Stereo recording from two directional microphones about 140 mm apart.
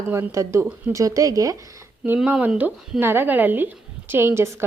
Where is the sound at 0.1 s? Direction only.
20° right (ahead or behind).